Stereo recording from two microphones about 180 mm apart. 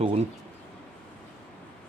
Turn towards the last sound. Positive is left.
turn(degrees=-35)  # may be behind; listen again after turning